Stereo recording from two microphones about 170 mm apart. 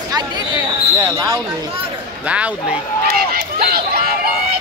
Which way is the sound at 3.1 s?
60° right (ahead or behind).